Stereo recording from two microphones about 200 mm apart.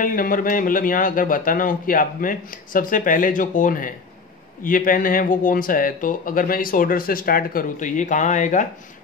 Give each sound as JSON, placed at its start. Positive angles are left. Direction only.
{"t": 0.0, "sound": "speech", "side_deg": 45}